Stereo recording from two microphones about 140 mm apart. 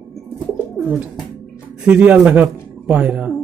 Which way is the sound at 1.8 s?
10° right (ahead or behind).